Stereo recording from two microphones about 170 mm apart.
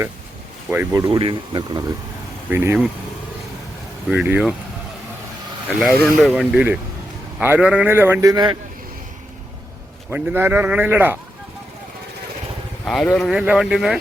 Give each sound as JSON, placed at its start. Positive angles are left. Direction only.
{"t": 0.7, "sound": "a man's voice", "side_deg": -10}
{"t": 1.2, "sound": "speech", "side_deg": -25}
{"t": 2.5, "sound": "a man's voice", "side_deg": -10}
{"t": 4.1, "sound": "speech", "side_deg": -5}
{"t": 5.8, "sound": "speech", "side_deg": 0}
{"t": 7.3, "sound": "a man's voice", "side_deg": -10}
{"t": 10.1, "sound": "a man's voice", "side_deg": -10}
{"t": 12.8, "sound": "speech", "side_deg": 0}